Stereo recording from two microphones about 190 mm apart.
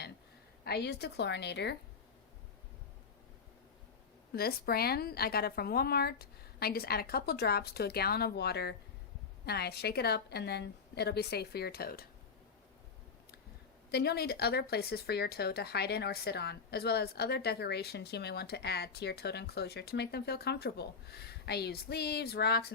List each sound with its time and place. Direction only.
0.6 s speech: 60° left (ahead or behind)
4.4 s speech: 55° left (ahead or behind)
13.9 s speech: 60° left (ahead or behind)